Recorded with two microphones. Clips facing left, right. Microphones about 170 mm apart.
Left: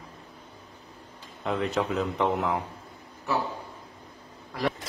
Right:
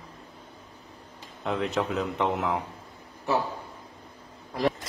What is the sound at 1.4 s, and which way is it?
Speech, centre (ahead or behind).